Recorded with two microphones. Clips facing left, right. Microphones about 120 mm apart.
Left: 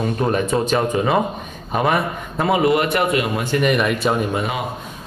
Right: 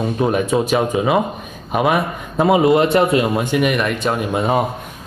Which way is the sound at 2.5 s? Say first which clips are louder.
Right 4 dB; 25° right (ahead or behind).